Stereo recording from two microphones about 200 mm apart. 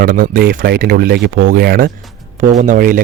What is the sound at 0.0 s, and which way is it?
Speech, 45° right (ahead or behind).